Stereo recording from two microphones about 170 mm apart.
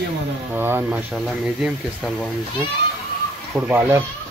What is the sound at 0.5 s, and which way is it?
Speech, 10° right (ahead or behind).